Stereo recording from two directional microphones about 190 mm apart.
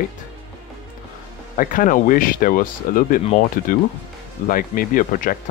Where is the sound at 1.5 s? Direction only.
45° left (ahead or behind).